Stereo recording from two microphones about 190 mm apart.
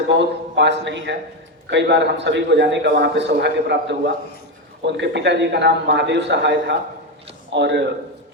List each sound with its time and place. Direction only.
0.2 s a man's voice: 70° right (ahead or behind)